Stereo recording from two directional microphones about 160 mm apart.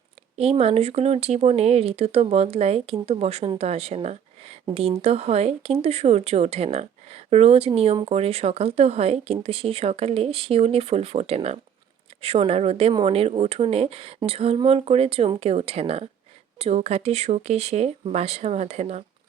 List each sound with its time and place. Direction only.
0.3 s speech: 40° right (ahead or behind)